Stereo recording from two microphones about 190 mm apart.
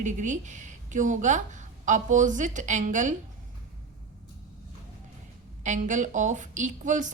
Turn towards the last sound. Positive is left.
turn(degrees=-40)  # may be behind; listen again after turning